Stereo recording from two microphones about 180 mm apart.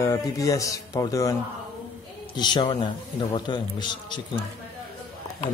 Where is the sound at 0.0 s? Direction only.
15° left (ahead or behind).